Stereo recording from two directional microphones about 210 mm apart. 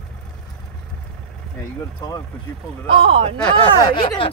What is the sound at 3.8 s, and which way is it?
Speech, 20° left (ahead or behind).